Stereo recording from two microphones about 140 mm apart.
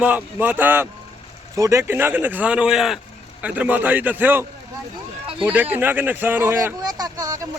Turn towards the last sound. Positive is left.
turn(degrees=-25)  # may be behind; listen again after turning